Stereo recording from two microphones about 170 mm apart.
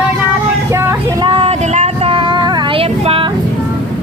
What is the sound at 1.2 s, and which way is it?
Child singing, 30° right (ahead or behind).